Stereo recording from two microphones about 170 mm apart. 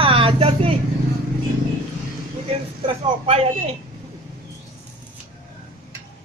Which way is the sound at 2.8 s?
35° right (ahead or behind).